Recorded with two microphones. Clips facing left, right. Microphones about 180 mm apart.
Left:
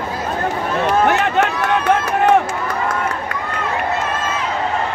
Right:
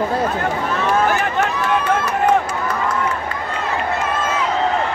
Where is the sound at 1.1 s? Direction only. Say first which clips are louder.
Left 3 dB; 70° left (ahead or behind).